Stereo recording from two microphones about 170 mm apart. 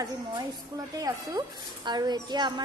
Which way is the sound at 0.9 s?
20° right (ahead or behind).